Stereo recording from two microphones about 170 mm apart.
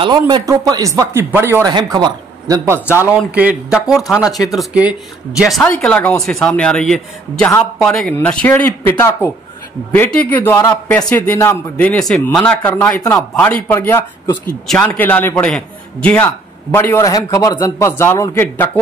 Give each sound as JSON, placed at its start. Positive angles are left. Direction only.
{"t": 0.0, "sound": "speech", "side_deg": -25}
{"t": 1.7, "sound": "speech", "side_deg": -25}
{"t": 3.0, "sound": "a man's voice", "side_deg": -10}
{"t": 5.6, "sound": "a man's voice", "side_deg": 10}
{"t": 12.6, "sound": "a man's voice", "side_deg": 20}